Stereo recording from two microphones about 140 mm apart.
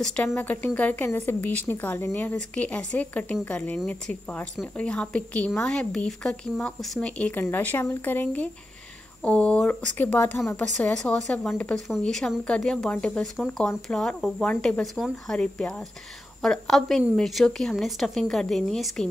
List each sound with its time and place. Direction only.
0.0 s a woman's voice: 10° left (ahead or behind)